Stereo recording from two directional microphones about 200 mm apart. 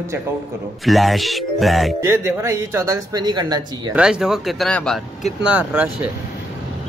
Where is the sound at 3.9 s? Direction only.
5° right (ahead or behind).